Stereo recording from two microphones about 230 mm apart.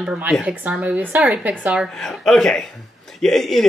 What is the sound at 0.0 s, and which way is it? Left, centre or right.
A woman's voice, centre.